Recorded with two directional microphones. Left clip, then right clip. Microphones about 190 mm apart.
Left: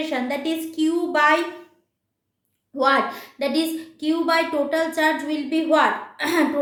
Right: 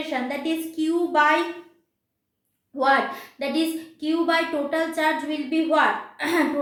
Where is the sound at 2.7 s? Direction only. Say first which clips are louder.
Left 1 dB; 30° left (ahead or behind).